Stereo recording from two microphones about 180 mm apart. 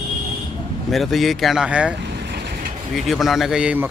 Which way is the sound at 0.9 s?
Centre (ahead or behind).